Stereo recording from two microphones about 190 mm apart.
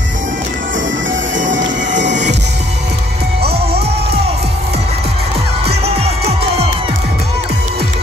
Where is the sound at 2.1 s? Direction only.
40° right (ahead or behind).